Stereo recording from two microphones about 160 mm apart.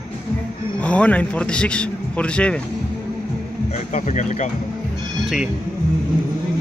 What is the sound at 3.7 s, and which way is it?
Speech, 45° left (ahead or behind).